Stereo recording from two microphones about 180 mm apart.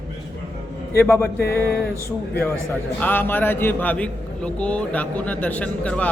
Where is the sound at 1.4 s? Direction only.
65° left (ahead or behind).